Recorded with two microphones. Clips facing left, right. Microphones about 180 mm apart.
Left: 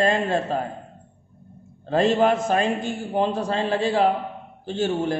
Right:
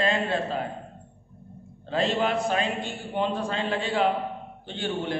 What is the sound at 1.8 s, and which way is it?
A man's voice, 45° left (ahead or behind).